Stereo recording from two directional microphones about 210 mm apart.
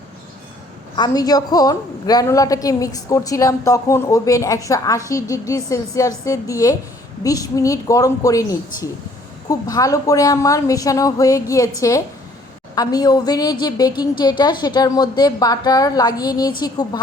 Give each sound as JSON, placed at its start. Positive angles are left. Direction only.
{"t": 0.9, "sound": "a woman's voice", "side_deg": 20}